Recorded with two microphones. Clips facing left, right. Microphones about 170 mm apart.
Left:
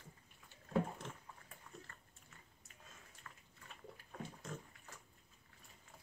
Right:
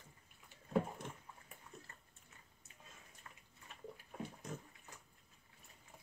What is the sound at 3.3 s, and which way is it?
Bathtub, 20° right (ahead or behind).